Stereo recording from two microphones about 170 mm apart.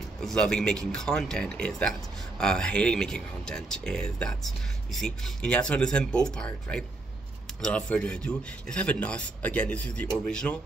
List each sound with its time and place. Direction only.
0.2 s a man's voice: 5° left (ahead or behind)